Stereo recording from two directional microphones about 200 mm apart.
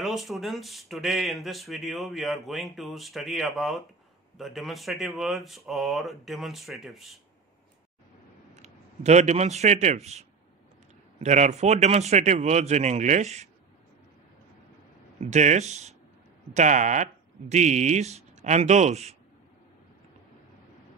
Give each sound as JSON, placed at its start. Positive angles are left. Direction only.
{"t": 0.0, "sound": "speech", "side_deg": 0}
{"t": 8.5, "sound": "speech", "side_deg": -35}
{"t": 15.1, "sound": "speech", "side_deg": -35}